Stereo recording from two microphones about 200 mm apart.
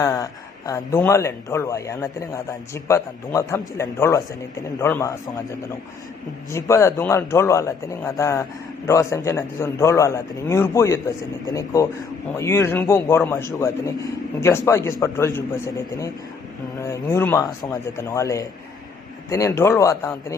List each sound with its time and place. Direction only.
0.0 s speech: 15° left (ahead or behind)